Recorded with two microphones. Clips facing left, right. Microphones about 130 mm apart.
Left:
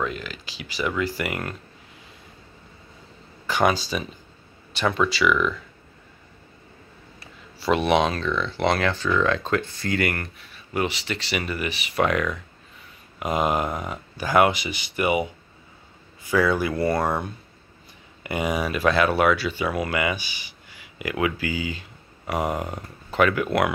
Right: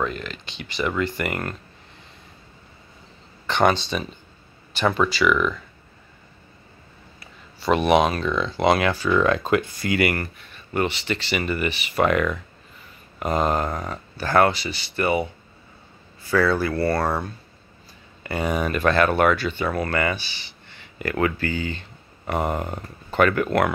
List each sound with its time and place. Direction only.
0.0 s speech: 5° left (ahead or behind)
3.4 s speech: 5° left (ahead or behind)
7.5 s speech: centre (ahead or behind)
13.2 s speech: 10° left (ahead or behind)